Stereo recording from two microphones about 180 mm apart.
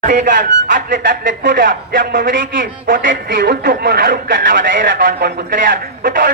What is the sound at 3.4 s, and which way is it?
A man's voice, 65° right (ahead or behind).